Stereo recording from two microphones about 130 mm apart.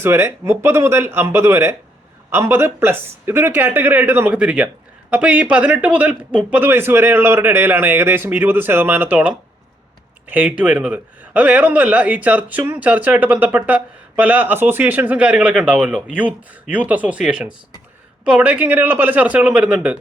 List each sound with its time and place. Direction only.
0.0 s a man's voice: 20° right (ahead or behind)